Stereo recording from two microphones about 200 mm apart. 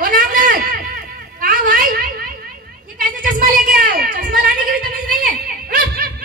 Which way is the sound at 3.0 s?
45° right (ahead or behind).